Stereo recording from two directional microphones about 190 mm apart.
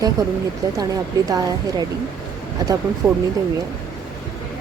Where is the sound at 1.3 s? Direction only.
20° right (ahead or behind).